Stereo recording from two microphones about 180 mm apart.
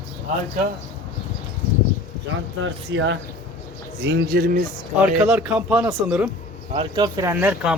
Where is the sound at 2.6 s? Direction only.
90° right.